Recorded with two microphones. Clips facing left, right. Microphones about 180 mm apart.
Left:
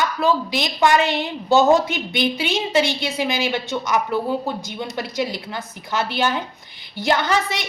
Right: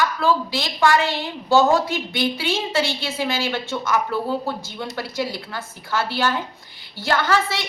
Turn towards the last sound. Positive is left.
turn(degrees=20)  # may be behind; listen again after turning